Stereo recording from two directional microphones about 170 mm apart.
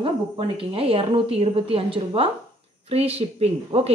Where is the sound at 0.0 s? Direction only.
30° right (ahead or behind).